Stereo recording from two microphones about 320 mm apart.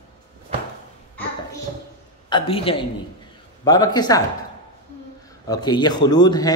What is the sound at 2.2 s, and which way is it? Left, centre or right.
Speech, centre.